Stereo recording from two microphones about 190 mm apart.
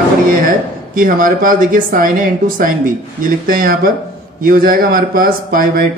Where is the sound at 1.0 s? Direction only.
45° right (ahead or behind).